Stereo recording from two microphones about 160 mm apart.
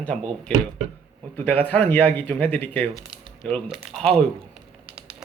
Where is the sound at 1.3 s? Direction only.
10° left (ahead or behind).